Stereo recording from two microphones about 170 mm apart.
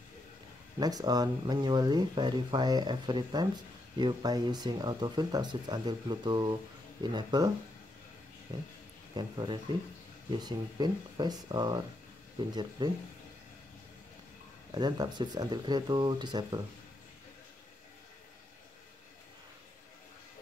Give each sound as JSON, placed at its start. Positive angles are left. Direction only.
{"t": 0.7, "sound": "speech", "side_deg": -20}
{"t": 14.7, "sound": "speech", "side_deg": -25}